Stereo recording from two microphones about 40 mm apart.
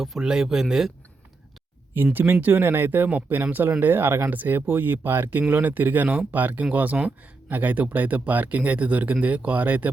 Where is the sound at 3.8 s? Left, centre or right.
Right.